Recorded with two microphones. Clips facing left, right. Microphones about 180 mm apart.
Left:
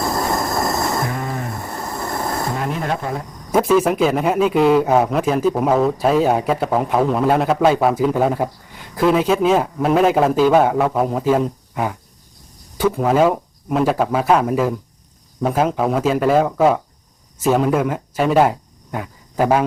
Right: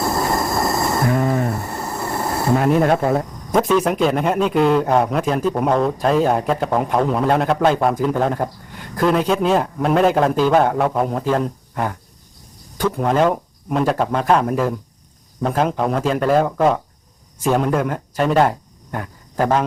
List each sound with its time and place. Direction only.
0.0 s train: 5° right (ahead or behind)
1.6 s a sound: 10° right (ahead or behind)
2.6 s speech: 50° right (ahead or behind)
3.5 s a man's voice: 5° left (ahead or behind)